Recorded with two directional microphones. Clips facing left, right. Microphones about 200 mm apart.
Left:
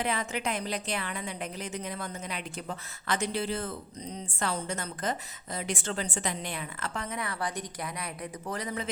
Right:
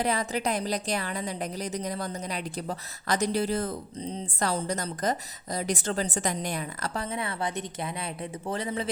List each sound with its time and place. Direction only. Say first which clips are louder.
0.0 s a woman's voice: right 4 dB; 40° right (ahead or behind)